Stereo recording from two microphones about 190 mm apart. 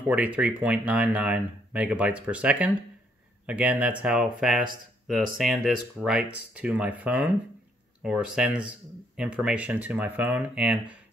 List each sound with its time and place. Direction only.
0.0 s speech: 5° right (ahead or behind)